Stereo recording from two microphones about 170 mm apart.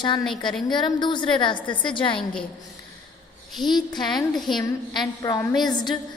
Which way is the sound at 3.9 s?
25° left (ahead or behind).